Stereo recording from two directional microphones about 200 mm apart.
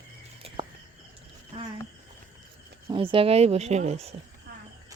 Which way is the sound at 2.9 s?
25° right (ahead or behind).